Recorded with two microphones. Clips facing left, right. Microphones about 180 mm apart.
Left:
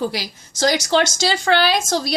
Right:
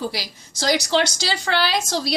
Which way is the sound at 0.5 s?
50° left (ahead or behind).